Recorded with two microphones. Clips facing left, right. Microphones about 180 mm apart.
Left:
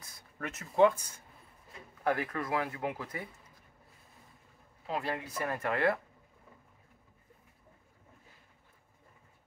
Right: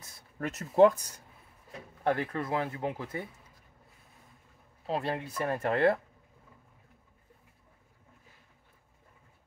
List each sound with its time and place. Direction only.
0.0 s speech: 35° right (ahead or behind)
4.8 s speech: 30° right (ahead or behind)